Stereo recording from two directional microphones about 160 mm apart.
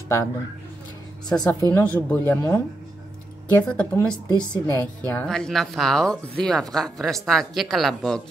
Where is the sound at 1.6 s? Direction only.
10° left (ahead or behind).